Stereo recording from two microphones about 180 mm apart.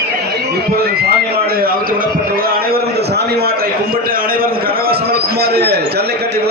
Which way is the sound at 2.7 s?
60° right (ahead or behind).